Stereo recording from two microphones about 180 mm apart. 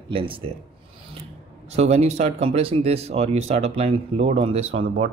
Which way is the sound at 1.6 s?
35° right (ahead or behind).